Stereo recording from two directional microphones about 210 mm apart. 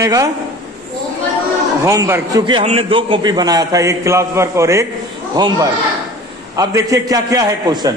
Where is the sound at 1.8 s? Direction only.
15° right (ahead or behind).